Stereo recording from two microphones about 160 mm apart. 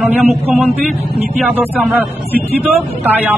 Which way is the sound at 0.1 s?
10° right (ahead or behind).